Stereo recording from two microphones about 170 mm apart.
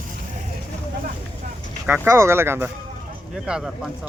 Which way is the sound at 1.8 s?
10° right (ahead or behind).